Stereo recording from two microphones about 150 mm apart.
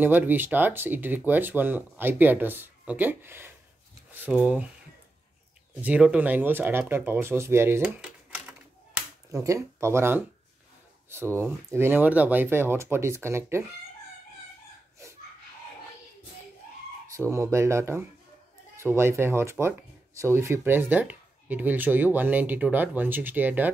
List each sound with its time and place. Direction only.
0.0 s speech: 15° right (ahead or behind)
5.8 s speech: 10° right (ahead or behind)
8.5 s typing: 15° right (ahead or behind)
11.1 s speech: 15° right (ahead or behind)
17.1 s speech: 20° right (ahead or behind)